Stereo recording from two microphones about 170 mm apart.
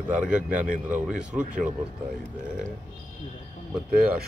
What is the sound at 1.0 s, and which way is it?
Speech, 5° right (ahead or behind).